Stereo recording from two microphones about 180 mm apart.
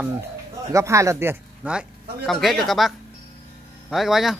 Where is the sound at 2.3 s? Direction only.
Centre (ahead or behind).